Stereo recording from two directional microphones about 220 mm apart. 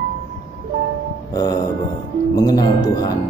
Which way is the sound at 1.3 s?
15° left (ahead or behind).